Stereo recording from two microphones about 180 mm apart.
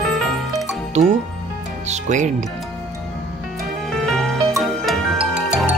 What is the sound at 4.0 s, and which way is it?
Music, centre (ahead or behind).